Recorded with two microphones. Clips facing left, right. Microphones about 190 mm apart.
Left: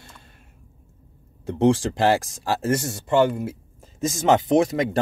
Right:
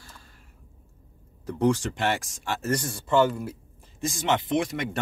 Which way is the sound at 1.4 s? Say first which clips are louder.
Left 5 dB; 25° left (ahead or behind).